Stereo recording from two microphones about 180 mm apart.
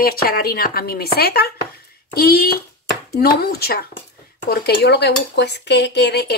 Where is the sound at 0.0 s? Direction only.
55° left (ahead or behind).